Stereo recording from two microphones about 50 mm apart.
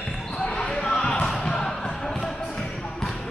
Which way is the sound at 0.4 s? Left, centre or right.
Left.